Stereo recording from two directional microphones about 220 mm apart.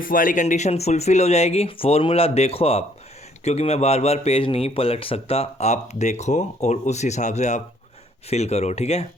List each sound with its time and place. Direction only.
0.0 s speech: 40° left (ahead or behind)